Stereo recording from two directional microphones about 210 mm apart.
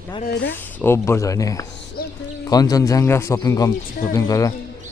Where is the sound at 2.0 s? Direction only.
45° left (ahead or behind).